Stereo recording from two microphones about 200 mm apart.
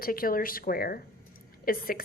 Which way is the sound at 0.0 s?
45° left (ahead or behind).